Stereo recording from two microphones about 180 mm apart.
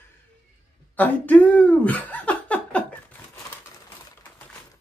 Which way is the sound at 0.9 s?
10° left (ahead or behind).